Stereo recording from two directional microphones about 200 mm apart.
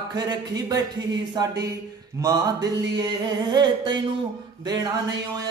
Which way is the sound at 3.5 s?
20° right (ahead or behind).